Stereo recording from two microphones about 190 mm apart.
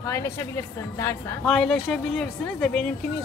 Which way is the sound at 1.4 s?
5° left (ahead or behind).